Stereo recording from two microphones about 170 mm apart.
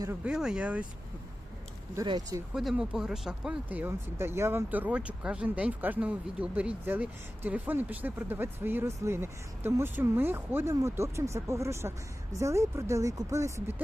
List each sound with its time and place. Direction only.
0.3 s speech: 5° right (ahead or behind)
2.0 s speech: 20° right (ahead or behind)
2.6 s speech: 5° right (ahead or behind)